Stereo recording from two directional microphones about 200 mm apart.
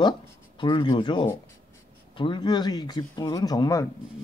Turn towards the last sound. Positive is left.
turn(degrees=15)  # may be behind; listen again after turning